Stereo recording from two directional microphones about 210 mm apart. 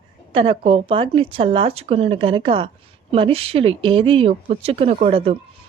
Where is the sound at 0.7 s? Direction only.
25° right (ahead or behind).